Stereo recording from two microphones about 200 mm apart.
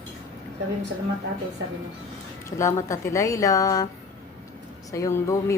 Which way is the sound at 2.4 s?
15° left (ahead or behind).